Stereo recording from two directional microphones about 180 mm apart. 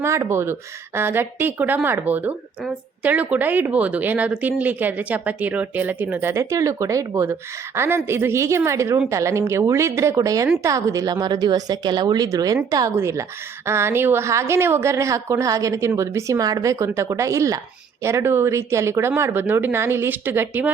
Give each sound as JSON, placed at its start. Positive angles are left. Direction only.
{"t": 0.0, "sound": "a woman's voice", "side_deg": -15}